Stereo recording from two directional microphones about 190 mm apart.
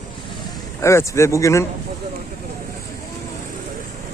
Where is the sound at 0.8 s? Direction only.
15° left (ahead or behind).